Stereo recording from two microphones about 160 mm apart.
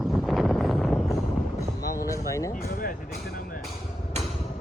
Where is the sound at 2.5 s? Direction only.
65° left (ahead or behind).